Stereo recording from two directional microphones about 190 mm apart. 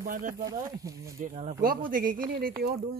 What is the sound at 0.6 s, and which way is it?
Speech, 15° right (ahead or behind).